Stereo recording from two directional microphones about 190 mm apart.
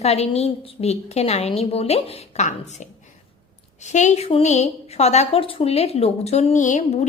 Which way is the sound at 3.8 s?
40° left (ahead or behind).